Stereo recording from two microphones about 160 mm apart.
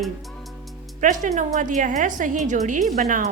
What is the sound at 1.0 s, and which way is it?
A woman's voice, 50° right (ahead or behind).